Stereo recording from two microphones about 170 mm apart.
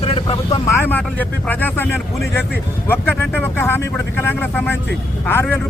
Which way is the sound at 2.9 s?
10° left (ahead or behind).